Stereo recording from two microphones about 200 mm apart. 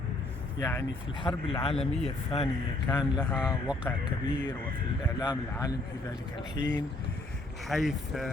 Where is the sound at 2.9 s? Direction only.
20° left (ahead or behind).